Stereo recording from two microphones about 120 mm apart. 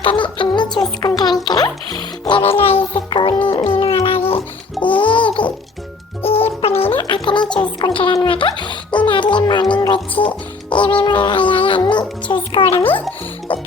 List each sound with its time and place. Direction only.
0.0 s music: 45° left (ahead or behind)
1.0 s a child's voice: 35° left (ahead or behind)
1.5 s music: 35° left (ahead or behind)
2.4 s music: 50° left (ahead or behind)
7.1 s music: 40° left (ahead or behind)